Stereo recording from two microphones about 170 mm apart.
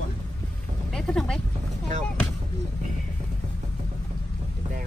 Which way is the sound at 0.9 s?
5° left (ahead or behind).